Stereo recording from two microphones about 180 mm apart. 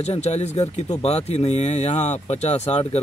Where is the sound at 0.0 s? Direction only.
35° left (ahead or behind).